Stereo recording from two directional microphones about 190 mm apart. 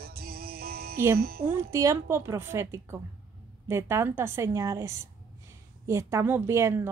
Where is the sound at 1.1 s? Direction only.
50° right (ahead or behind).